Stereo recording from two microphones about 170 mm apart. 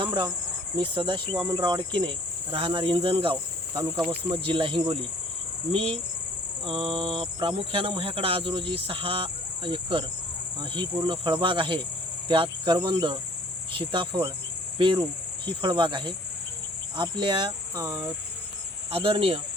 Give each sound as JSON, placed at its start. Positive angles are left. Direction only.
{"t": 0.0, "sound": "cricket", "side_deg": -25}
{"t": 0.8, "sound": "insect", "side_deg": -30}
{"t": 2.5, "sound": "speech", "side_deg": -30}
{"t": 10.6, "sound": "insect", "side_deg": -30}
{"t": 18.9, "sound": "speech", "side_deg": -35}